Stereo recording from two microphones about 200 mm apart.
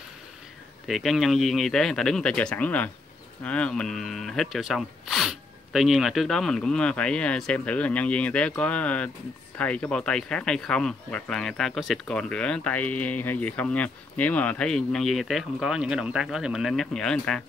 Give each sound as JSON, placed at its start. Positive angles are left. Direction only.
{"t": 0.8, "sound": "speech", "side_deg": 0}